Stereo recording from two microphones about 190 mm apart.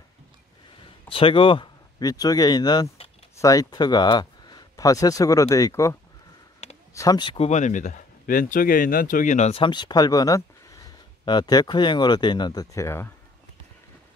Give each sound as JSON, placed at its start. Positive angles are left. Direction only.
{"t": 1.0, "sound": "speech", "side_deg": 30}